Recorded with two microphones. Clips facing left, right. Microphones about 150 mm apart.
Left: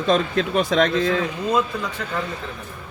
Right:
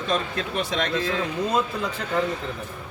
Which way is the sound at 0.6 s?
50° left (ahead or behind).